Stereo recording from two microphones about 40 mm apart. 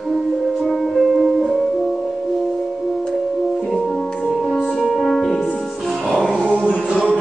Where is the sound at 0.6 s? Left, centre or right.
Centre.